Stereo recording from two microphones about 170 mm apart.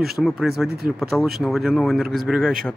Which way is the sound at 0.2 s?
Centre (ahead or behind).